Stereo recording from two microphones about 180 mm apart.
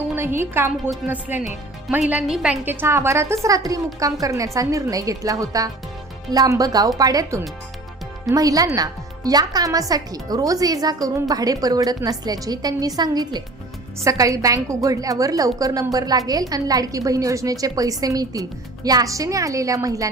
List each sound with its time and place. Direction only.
0.2 s a woman's voice: 15° right (ahead or behind)